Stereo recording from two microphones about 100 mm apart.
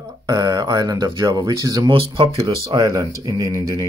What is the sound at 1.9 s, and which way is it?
Speech, 60° right (ahead or behind).